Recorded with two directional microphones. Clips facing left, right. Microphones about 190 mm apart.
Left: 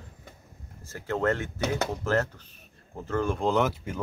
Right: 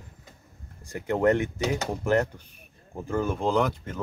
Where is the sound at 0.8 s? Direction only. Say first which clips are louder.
Right 4 dB; 15° right (ahead or behind); by 4.0 s 5° left (ahead or behind).